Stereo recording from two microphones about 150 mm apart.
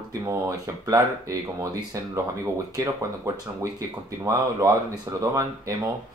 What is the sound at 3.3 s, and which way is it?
Speech, 20° right (ahead or behind).